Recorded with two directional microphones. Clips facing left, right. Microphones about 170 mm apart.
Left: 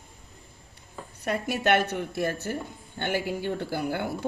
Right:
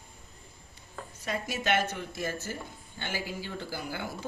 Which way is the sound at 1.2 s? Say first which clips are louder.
Left 6 dB; 60° left (ahead or behind).